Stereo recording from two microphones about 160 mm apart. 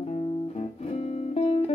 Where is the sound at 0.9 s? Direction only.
40° left (ahead or behind).